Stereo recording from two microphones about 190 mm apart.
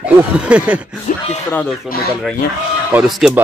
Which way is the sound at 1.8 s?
50° left (ahead or behind).